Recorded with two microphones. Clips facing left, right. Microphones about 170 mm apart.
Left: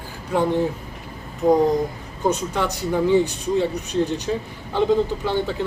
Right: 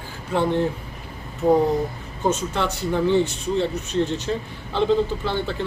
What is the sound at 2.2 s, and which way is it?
A man's voice, 15° left (ahead or behind).